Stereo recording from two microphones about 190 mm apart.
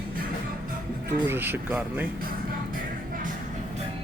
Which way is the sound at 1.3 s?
10° right (ahead or behind).